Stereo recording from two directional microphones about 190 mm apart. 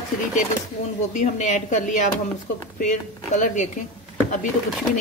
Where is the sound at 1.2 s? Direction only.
40° left (ahead or behind).